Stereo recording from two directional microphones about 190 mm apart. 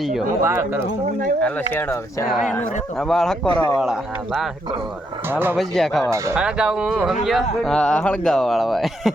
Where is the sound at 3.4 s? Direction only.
25° left (ahead or behind).